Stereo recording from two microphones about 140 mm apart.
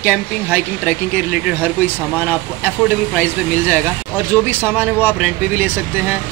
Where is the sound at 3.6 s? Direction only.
15° right (ahead or behind).